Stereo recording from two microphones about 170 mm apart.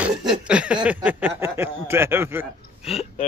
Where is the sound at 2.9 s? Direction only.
35° left (ahead or behind).